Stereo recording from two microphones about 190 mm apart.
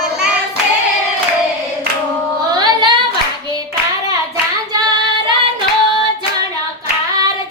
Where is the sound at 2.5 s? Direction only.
25° right (ahead or behind).